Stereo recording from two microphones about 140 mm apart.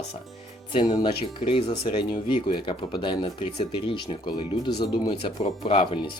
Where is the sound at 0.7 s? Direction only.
35° left (ahead or behind).